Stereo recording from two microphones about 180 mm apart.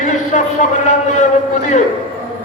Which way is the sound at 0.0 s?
45° left (ahead or behind).